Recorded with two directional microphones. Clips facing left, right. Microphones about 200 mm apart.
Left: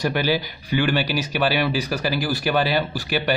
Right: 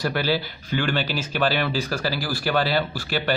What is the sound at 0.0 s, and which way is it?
Speech, 15° left (ahead or behind).